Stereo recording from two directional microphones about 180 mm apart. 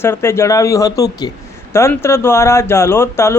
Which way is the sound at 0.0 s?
15° left (ahead or behind).